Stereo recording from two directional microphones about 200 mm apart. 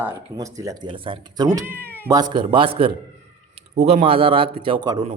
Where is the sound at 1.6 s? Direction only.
10° right (ahead or behind).